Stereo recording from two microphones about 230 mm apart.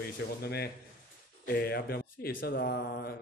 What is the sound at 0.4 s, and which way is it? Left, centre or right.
Speech, left.